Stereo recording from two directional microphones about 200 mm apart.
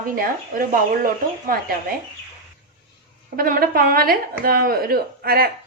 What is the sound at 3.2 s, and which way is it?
A woman's voice, 45° right (ahead or behind).